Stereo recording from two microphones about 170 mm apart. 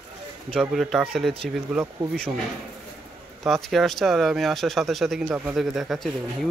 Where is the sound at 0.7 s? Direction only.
Centre (ahead or behind).